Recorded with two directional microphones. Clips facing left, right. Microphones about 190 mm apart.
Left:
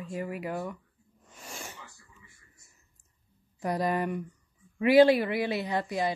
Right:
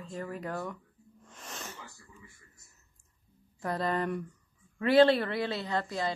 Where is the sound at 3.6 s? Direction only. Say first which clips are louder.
Left 2 dB; 15° left (ahead or behind).